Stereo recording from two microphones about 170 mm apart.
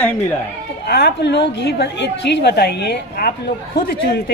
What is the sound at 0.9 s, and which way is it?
A woman's voice, 75° left (ahead or behind).